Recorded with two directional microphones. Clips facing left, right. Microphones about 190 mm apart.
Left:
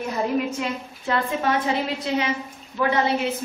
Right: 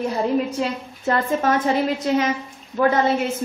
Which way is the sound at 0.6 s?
45° right (ahead or behind).